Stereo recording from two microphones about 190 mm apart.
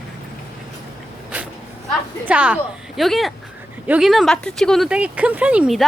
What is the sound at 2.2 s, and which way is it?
A woman's voice, 5° right (ahead or behind).